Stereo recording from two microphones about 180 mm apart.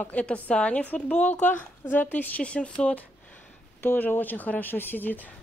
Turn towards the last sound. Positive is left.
turn(degrees=10)  # may be behind; listen again after turning